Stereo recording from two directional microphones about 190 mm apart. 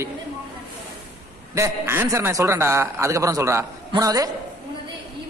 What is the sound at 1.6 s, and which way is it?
A man's voice, 15° right (ahead or behind).